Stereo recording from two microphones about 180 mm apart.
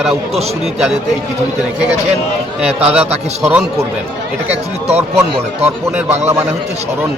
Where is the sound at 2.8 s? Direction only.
5° right (ahead or behind).